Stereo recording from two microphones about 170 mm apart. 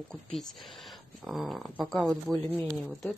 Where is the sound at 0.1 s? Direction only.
Centre (ahead or behind).